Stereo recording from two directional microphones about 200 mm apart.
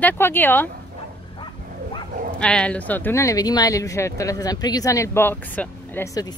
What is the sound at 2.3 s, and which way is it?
Speech, 5° left (ahead or behind).